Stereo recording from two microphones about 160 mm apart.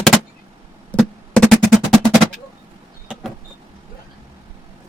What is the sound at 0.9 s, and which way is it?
Music, 5° left (ahead or behind).